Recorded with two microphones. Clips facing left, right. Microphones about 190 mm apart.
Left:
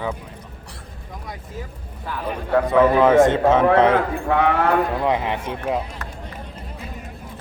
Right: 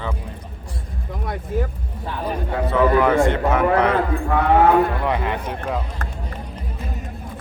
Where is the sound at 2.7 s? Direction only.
20° left (ahead or behind).